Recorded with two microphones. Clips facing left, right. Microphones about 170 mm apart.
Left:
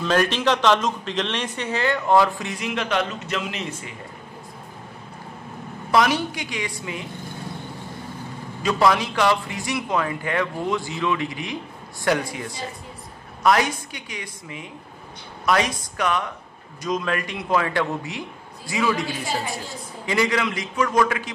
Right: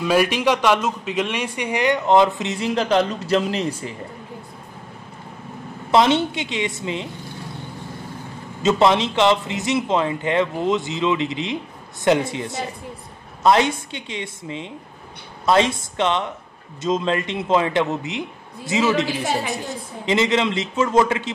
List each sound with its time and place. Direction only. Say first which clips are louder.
0.0 s a man's voice: right 3 dB; 10° right (ahead or behind); by 3.9 s 35° right (ahead or behind)
5.9 s speech: right 4 dB; 25° right (ahead or behind)
8.6 s speech: right 3 dB; 25° right (ahead or behind)